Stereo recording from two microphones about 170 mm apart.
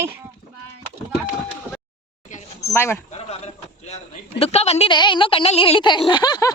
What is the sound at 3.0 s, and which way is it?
A man's voice, 40° left (ahead or behind).